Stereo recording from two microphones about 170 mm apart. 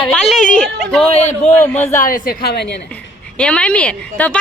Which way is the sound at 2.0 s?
55° left (ahead or behind).